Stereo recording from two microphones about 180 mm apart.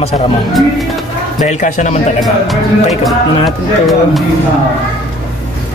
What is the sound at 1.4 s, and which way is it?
Speech, 40° left (ahead or behind).